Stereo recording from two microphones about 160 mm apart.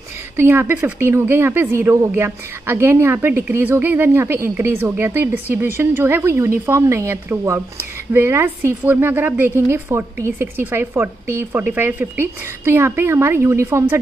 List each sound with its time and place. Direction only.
0.4 s a woman's voice: 15° right (ahead or behind)